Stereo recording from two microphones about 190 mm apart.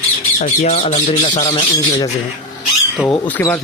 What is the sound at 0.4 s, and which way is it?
Speech, 40° left (ahead or behind).